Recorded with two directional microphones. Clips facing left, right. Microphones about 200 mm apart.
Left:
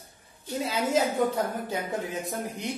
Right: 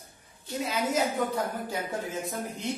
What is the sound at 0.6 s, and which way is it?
A woman's voice, 30° left (ahead or behind).